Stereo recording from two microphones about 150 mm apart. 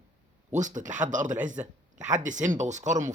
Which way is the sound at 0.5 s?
55° right (ahead or behind).